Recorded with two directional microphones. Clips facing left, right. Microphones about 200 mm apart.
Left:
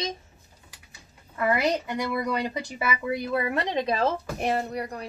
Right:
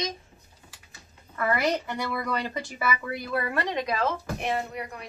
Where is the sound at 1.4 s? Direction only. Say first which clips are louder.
Left 2 dB; 15° left (ahead or behind).